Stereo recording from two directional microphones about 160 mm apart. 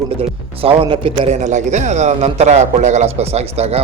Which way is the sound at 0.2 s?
35° right (ahead or behind).